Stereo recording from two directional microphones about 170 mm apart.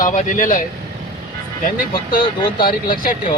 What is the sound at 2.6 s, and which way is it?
Speech, 60° left (ahead or behind).